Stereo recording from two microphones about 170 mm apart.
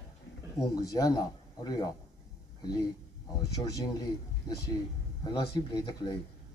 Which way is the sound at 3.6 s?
20° left (ahead or behind).